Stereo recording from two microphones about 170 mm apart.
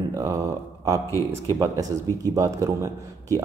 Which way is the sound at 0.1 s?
20° right (ahead or behind).